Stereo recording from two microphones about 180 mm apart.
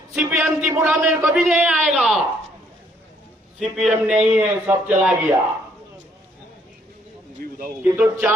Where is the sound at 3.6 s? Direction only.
Centre (ahead or behind).